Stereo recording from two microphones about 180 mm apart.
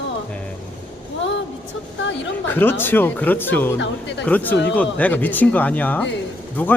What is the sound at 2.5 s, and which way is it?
Speech, 10° left (ahead or behind).